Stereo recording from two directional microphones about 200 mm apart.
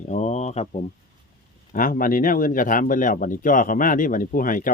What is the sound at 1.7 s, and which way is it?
Speech, 45° left (ahead or behind).